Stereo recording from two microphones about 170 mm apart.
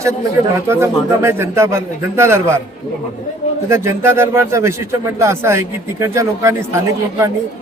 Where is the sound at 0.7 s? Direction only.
15° right (ahead or behind).